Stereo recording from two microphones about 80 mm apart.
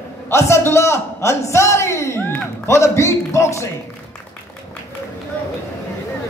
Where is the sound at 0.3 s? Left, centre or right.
Left.